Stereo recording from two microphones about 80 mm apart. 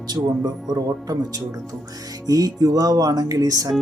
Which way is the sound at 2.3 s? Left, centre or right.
Right.